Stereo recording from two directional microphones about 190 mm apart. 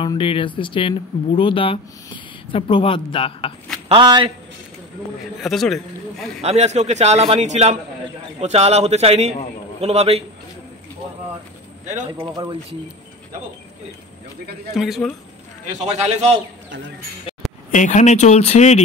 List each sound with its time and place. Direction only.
0.0 s speech: 30° left (ahead or behind)
3.9 s speech: 25° right (ahead or behind)
5.4 s speech: centre (ahead or behind)
6.4 s a man's voice: 35° right (ahead or behind)
11.9 s speech: 20° right (ahead or behind)
14.7 s speech: centre (ahead or behind)
15.6 s a man's voice: 35° right (ahead or behind)
17.6 s speech: 40° left (ahead or behind)